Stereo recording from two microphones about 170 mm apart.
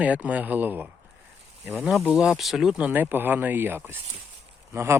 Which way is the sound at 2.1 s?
Centre (ahead or behind).